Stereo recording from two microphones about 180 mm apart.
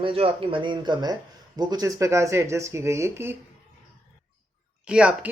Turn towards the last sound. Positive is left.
turn(degrees=-5)  # may be behind; listen again after turning